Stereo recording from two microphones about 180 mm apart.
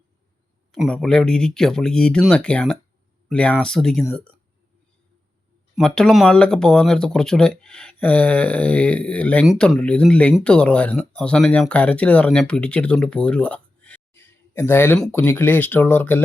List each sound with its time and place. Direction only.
0.7 s speech: 5° left (ahead or behind)
5.7 s speech: 5° left (ahead or behind)